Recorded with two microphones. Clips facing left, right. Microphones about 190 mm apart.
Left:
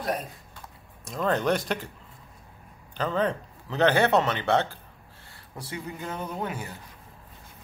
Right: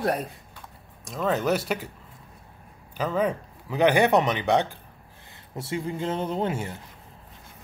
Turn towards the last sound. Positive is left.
turn(degrees=-25)  # may be behind; listen again after turning